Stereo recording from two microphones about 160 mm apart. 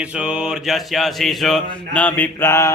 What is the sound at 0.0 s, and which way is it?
Mantra, 5° right (ahead or behind).